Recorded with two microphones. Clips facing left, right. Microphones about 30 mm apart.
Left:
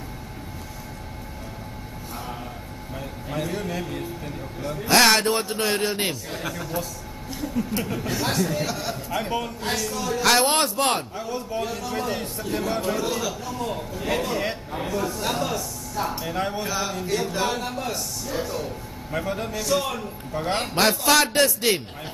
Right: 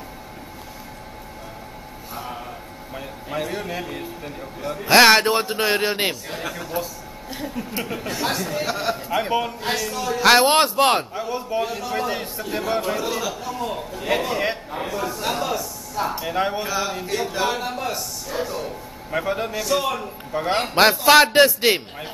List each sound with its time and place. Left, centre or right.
2.9 s a man's voice: centre
4.8 s a man's voice: right
6.3 s a man's voice: centre
8.6 s a man's voice: right
10.2 s a man's voice: right
16.6 s a man's voice: centre
21.0 s a man's voice: right